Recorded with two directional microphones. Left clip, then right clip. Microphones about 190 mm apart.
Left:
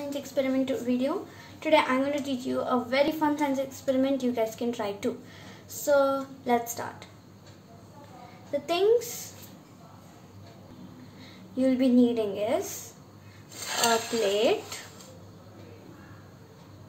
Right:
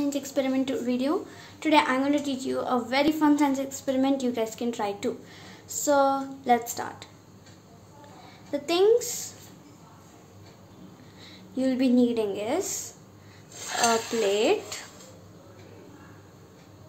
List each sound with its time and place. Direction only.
0.1 s a woman's voice: 45° right (ahead or behind)
0.8 s a woman's voice: 30° right (ahead or behind)
8.5 s a woman's voice: 25° right (ahead or behind)
11.5 s a woman's voice: 25° right (ahead or behind)
14.3 s a woman's voice: 20° right (ahead or behind)